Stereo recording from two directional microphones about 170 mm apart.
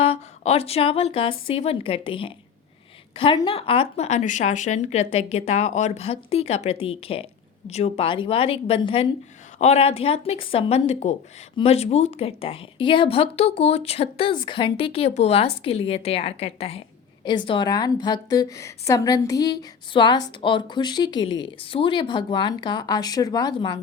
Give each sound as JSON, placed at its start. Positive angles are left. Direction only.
{"t": 0.0, "sound": "a woman's voice", "side_deg": 35}